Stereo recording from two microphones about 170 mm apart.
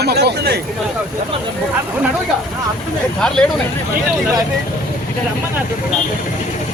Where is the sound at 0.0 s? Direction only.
70° right (ahead or behind).